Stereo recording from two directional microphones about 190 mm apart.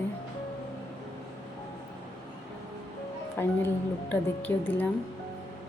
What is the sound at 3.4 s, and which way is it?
A woman's voice, 10° left (ahead or behind).